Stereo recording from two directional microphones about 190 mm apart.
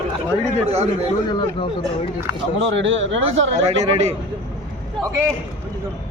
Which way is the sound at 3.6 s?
35° right (ahead or behind).